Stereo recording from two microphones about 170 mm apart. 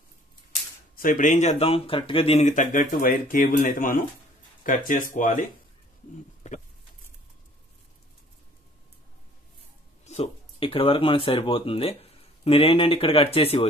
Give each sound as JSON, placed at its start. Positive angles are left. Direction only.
{"t": 0.9, "sound": "speech", "side_deg": 50}
{"t": 10.0, "sound": "speech", "side_deg": 35}